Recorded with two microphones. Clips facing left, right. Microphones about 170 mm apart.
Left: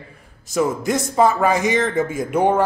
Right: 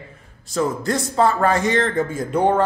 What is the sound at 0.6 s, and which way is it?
A man's voice, 15° left (ahead or behind).